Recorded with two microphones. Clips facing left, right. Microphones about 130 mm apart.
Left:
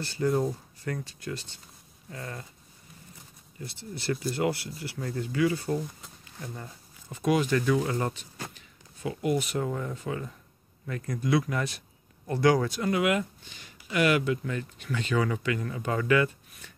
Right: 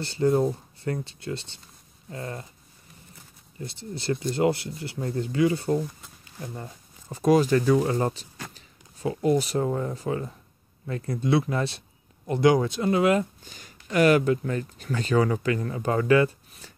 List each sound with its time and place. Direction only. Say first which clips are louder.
0.0 s speech: right 4 dB; 30° right (ahead or behind)
3.6 s speech: right 3 dB; 30° right (ahead or behind)